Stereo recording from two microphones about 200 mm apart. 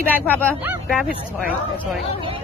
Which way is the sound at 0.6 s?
5° right (ahead or behind).